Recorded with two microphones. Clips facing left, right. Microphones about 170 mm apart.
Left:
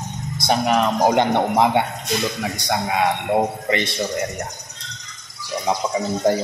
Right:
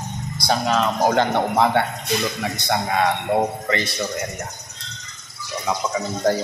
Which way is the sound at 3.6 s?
20° left (ahead or behind).